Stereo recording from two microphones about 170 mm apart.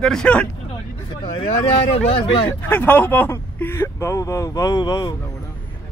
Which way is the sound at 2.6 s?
10° left (ahead or behind).